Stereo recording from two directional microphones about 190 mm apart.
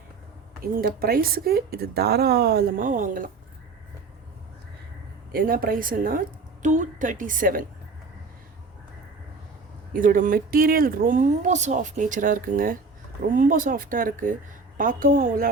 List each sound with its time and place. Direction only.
0.6 s speech: 50° right (ahead or behind)
5.3 s speech: 50° right (ahead or behind)
9.9 s speech: 45° right (ahead or behind)